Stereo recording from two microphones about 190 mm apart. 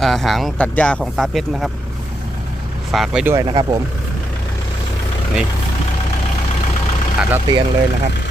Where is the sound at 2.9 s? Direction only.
Centre (ahead or behind).